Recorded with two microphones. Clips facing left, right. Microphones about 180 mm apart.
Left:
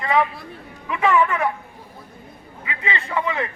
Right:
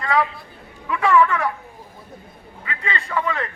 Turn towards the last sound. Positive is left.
turn(degrees=15)  # may be behind; listen again after turning